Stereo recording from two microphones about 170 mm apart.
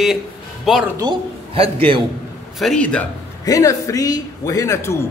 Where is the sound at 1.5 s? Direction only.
35° right (ahead or behind).